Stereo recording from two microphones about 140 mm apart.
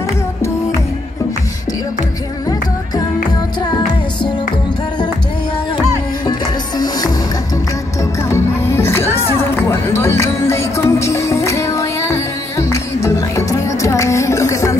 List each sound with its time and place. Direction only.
8.0 s music: 20° left (ahead or behind)